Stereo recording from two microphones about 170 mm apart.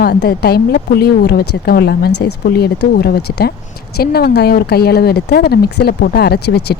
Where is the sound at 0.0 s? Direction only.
65° left (ahead or behind).